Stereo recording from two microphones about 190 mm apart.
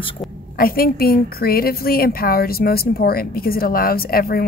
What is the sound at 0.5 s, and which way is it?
A woman's voice, 50° left (ahead or behind).